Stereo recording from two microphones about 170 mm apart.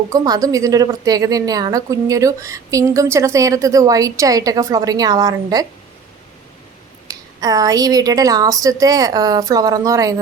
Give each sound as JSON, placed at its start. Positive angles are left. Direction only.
{"t": 0.1, "sound": "a woman's voice", "side_deg": -20}
{"t": 7.1, "sound": "a woman's voice", "side_deg": -20}